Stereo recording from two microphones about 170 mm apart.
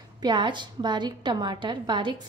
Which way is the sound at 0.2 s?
25° right (ahead or behind).